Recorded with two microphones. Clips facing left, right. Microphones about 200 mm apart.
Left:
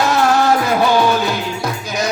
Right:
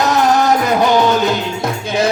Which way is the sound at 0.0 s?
20° right (ahead or behind).